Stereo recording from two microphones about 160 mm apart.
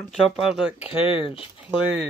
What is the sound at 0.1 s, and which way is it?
Speech, 5° right (ahead or behind).